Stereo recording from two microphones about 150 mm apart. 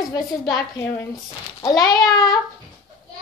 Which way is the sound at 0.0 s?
25° left (ahead or behind).